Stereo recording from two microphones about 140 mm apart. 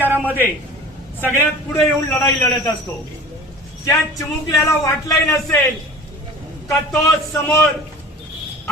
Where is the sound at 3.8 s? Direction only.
20° left (ahead or behind).